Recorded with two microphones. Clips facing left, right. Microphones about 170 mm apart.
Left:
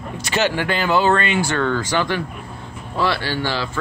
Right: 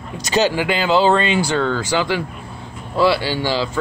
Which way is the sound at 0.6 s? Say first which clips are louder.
Right 2 dB; 15° right (ahead or behind).